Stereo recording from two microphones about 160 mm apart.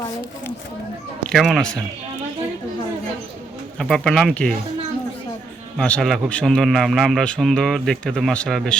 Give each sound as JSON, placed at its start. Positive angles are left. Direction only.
{"t": 1.3, "sound": "a man's voice", "side_deg": 0}
{"t": 3.8, "sound": "a man's voice", "side_deg": 5}
{"t": 5.7, "sound": "a man's voice", "side_deg": 5}